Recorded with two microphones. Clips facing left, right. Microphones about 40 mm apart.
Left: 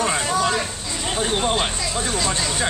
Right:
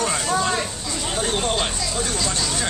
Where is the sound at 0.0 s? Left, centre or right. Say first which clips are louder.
Left 2 dB; centre.